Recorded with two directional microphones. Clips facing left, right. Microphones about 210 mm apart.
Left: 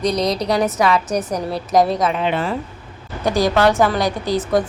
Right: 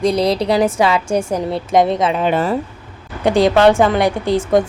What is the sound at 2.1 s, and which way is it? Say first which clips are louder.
Speech: right 4 dB; 45° right (ahead or behind).